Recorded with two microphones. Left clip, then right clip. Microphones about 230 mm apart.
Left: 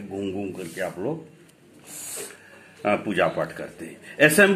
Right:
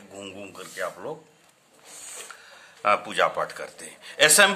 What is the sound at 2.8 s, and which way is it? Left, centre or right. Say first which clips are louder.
Speech: even; centre.